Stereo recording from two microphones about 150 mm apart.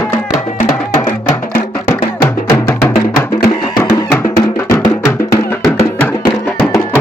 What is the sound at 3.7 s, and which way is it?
Music, 25° left (ahead or behind).